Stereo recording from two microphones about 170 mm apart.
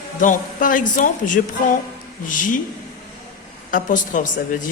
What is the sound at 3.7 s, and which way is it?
Speech, 50° left (ahead or behind).